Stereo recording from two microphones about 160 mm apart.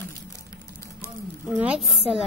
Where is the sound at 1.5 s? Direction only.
10° right (ahead or behind).